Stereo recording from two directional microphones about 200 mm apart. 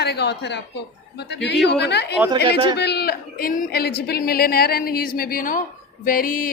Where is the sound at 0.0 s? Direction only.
55° left (ahead or behind).